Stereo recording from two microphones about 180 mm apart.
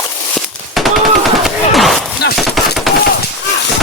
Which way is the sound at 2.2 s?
65° left (ahead or behind).